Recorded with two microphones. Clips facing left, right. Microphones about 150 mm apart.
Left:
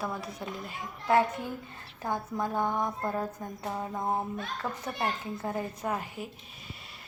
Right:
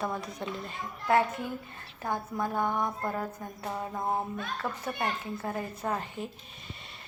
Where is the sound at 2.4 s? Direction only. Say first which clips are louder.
Even; 15° left (ahead or behind).